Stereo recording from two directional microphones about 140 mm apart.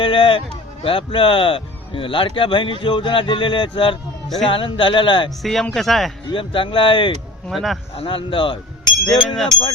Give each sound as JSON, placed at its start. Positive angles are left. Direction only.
{"t": 0.0, "sound": "a man's voice", "side_deg": 40}
{"t": 5.4, "sound": "speech", "side_deg": 0}
{"t": 6.3, "sound": "speech", "side_deg": 40}
{"t": 7.5, "sound": "speech", "side_deg": 0}
{"t": 7.9, "sound": "speech", "side_deg": 40}
{"t": 9.0, "sound": "speech", "side_deg": 0}